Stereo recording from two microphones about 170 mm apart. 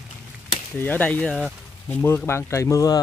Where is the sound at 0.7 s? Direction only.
10° left (ahead or behind).